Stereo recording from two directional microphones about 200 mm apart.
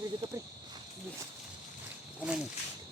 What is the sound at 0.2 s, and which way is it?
Cricket, 30° right (ahead or behind).